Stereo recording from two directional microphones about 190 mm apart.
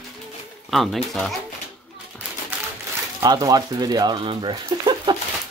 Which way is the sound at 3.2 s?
20° right (ahead or behind).